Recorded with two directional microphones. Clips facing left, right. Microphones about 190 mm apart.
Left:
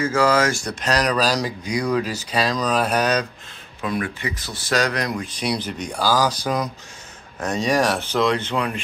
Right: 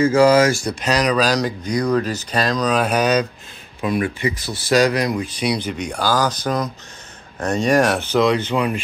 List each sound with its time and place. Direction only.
0.0 s speech: 15° right (ahead or behind)
3.8 s speech: 15° right (ahead or behind)